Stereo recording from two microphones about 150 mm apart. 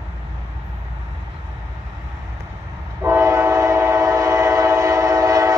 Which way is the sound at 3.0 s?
20° right (ahead or behind).